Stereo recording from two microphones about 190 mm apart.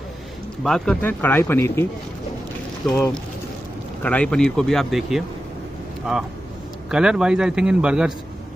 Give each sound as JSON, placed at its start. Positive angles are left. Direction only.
{"t": 0.7, "sound": "speech", "side_deg": 5}
{"t": 4.0, "sound": "speech", "side_deg": 5}